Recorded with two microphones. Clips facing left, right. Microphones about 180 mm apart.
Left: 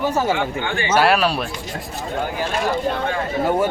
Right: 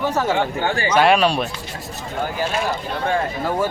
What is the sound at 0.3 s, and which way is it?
Speech, 40° right (ahead or behind).